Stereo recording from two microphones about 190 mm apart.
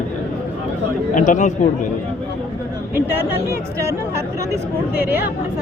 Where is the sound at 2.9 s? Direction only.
10° right (ahead or behind).